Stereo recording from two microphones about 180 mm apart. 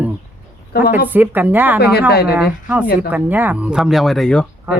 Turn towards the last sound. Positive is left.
turn(degrees=5)  # may be behind; listen again after turning